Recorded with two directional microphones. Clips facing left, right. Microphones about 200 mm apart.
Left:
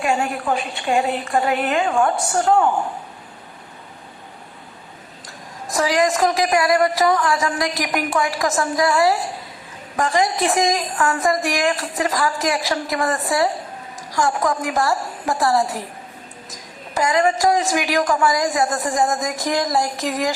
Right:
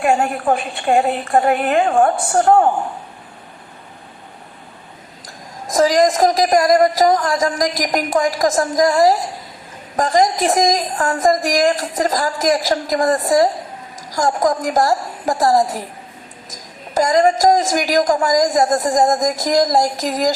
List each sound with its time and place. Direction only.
0.0 s a woman's voice: 50° right (ahead or behind)
5.7 s a woman's voice: 40° right (ahead or behind)
16.9 s a woman's voice: 45° right (ahead or behind)